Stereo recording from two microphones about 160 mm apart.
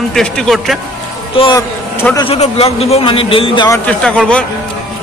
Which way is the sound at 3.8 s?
5° left (ahead or behind).